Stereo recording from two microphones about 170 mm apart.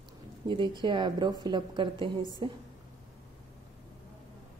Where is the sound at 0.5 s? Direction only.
30° right (ahead or behind).